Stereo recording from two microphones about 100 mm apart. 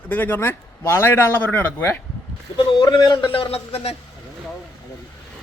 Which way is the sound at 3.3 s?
70° left (ahead or behind).